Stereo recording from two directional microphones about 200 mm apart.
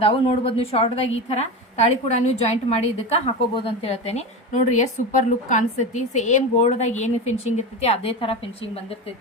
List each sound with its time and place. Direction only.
0.0 s a woman's voice: 30° left (ahead or behind)